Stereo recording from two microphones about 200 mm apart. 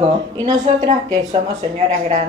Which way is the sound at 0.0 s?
25° right (ahead or behind).